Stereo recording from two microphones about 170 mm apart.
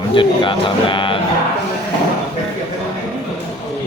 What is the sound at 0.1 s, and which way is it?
Speech, 30° left (ahead or behind).